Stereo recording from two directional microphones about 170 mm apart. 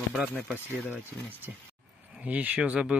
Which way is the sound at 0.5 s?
10° left (ahead or behind).